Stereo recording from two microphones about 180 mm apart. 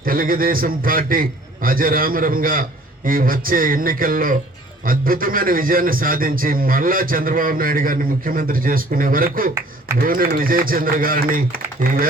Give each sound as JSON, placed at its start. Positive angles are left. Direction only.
{"t": 0.0, "sound": "a man's voice", "side_deg": -50}